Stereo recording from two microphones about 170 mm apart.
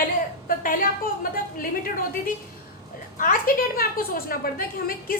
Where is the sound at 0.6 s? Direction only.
55° left (ahead or behind).